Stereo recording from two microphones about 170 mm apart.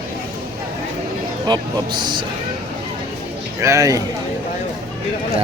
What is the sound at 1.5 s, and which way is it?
Speech, 25° right (ahead or behind).